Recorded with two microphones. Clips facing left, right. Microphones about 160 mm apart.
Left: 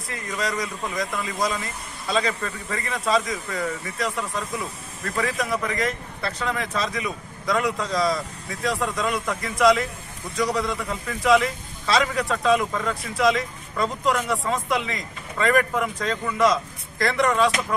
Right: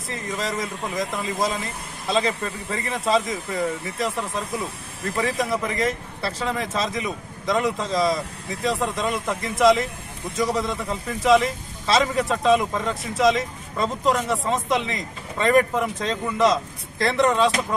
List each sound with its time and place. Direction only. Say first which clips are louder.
0.1 s speech: even; 25° right (ahead or behind)